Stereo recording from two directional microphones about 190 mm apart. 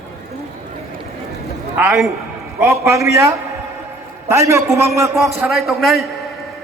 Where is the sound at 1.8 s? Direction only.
5° right (ahead or behind).